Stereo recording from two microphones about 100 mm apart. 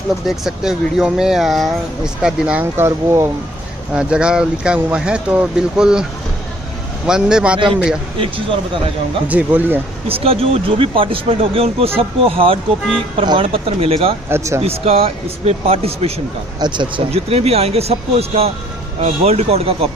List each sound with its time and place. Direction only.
0.3 s speech: 5° right (ahead or behind)
2.8 s speech: 25° right (ahead or behind)
3.9 s speech: 10° right (ahead or behind)
7.1 s speech: 5° right (ahead or behind)
7.5 s a man's voice: 55° right (ahead or behind)
9.3 s speech: 15° right (ahead or behind)
10.0 s speech: 70° right (ahead or behind)
13.2 s speech: 55° right (ahead or behind); by 14.1 s 75° right (ahead or behind)
14.3 s speech: 30° right (ahead or behind)
14.6 s speech: 85° right
16.5 s speech: 50° right (ahead or behind)
17.1 s speech: 90° right